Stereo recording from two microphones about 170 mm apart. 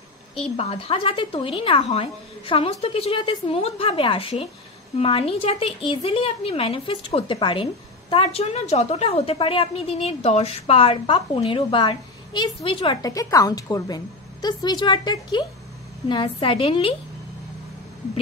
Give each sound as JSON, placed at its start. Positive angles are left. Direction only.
{"t": 0.6, "sound": "a woman's voice", "side_deg": 35}